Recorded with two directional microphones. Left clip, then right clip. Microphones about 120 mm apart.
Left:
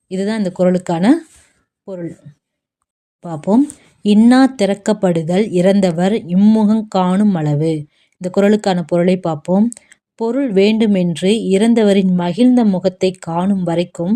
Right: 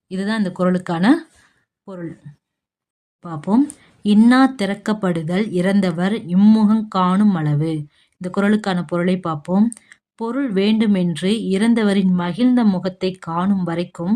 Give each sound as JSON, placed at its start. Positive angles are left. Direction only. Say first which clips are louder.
{"t": 0.1, "sound": "speech", "louder": "left 4 dB", "side_deg": 15}
{"t": 3.2, "sound": "speech", "louder": "left 4 dB", "side_deg": 20}
{"t": 6.3, "sound": "speech", "louder": "right 1 dB", "side_deg": 5}
{"t": 6.8, "sound": "speech", "louder": "left 2 dB", "side_deg": 15}